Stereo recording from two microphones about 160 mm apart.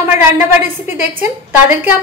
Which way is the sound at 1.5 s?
10° right (ahead or behind).